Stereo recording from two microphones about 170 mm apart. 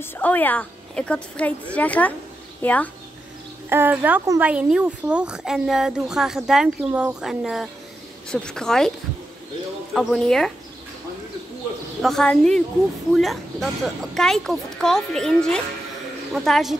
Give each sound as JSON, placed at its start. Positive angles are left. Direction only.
{"t": 0.0, "sound": "a woman's voice", "side_deg": 10}
{"t": 3.6, "sound": "speech", "side_deg": -10}
{"t": 9.9, "sound": "speech", "side_deg": 0}
{"t": 12.0, "sound": "speech", "side_deg": 5}